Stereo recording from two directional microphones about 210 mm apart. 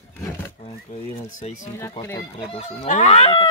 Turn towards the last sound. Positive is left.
turn(degrees=30)  # may be behind; listen again after turning